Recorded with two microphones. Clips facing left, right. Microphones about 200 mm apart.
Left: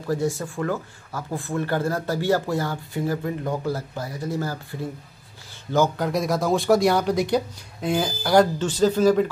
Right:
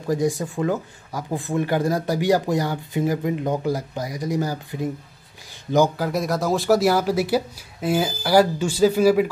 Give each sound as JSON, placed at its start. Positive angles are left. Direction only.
{"t": 0.0, "sound": "speech", "side_deg": -15}
{"t": 5.9, "sound": "speech", "side_deg": 0}